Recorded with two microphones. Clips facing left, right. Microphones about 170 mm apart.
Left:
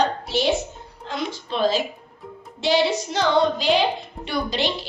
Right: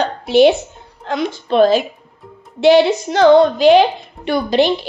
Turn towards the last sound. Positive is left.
turn(degrees=-55)  # may be behind; listen again after turning